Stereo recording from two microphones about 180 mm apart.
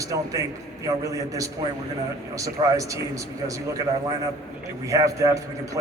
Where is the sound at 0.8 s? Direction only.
20° right (ahead or behind).